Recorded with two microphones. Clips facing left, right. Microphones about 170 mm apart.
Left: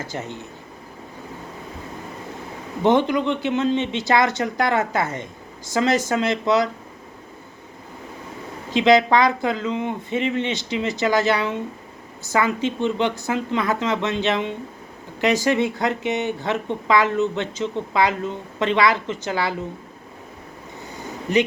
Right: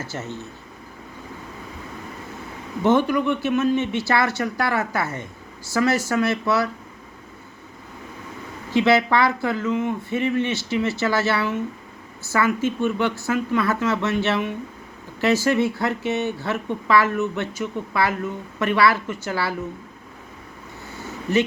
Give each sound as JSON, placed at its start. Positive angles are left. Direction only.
{"t": 0.0, "sound": "speech", "side_deg": 15}
{"t": 2.8, "sound": "speech", "side_deg": 20}
{"t": 8.7, "sound": "speech", "side_deg": 20}
{"t": 20.9, "sound": "a sound", "side_deg": 15}